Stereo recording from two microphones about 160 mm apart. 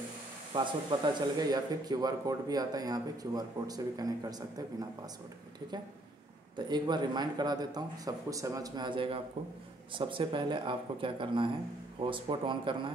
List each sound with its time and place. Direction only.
0.5 s speech: 30° right (ahead or behind)
6.5 s speech: 30° right (ahead or behind)